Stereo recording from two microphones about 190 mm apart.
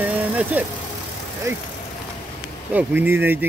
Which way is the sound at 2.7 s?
10° right (ahead or behind).